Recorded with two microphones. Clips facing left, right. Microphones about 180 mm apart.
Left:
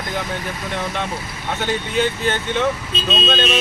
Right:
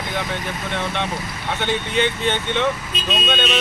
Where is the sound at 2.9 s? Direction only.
30° left (ahead or behind).